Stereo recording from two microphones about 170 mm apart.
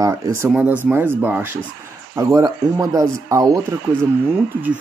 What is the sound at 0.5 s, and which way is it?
Speech, 10° right (ahead or behind).